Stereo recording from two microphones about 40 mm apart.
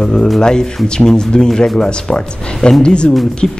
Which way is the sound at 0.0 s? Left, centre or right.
Centre.